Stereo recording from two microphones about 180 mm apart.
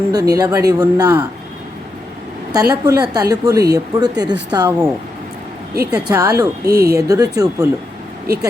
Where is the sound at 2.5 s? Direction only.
20° right (ahead or behind).